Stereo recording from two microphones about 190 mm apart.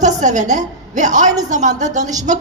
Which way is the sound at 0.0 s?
40° right (ahead or behind).